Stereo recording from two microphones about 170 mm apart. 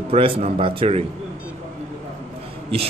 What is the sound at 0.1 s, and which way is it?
Speech, 35° right (ahead or behind).